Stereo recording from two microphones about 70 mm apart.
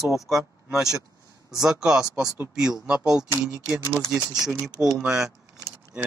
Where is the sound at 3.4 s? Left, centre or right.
Centre.